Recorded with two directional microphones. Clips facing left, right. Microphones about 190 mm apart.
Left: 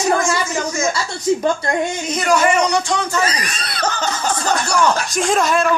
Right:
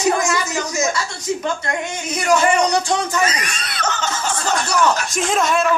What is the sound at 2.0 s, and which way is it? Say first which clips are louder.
Speech: left 1 dB; 10° right (ahead or behind).